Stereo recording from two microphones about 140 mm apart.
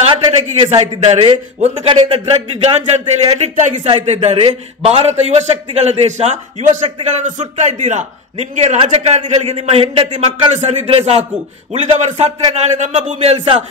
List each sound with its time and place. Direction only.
0.0 s a man's voice: 45° right (ahead or behind)